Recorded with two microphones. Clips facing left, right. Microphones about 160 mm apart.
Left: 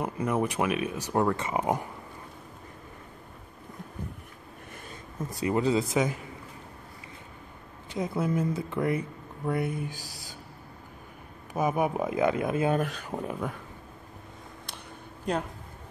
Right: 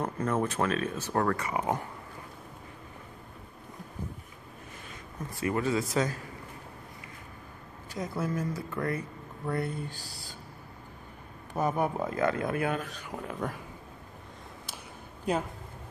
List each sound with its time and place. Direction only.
0.0 s speech: 10° left (ahead or behind)
5.4 s speech: 20° left (ahead or behind)
7.9 s speech: 20° left (ahead or behind)
11.5 s speech: 10° left (ahead or behind)
15.3 s speech: 5° right (ahead or behind)